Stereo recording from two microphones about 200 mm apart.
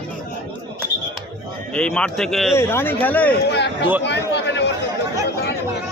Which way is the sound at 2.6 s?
10° left (ahead or behind).